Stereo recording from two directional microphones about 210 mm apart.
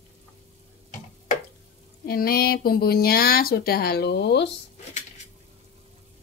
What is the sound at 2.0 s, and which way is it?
Speech, 45° left (ahead or behind).